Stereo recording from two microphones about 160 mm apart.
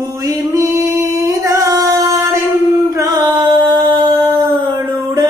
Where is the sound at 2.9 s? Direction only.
25° right (ahead or behind).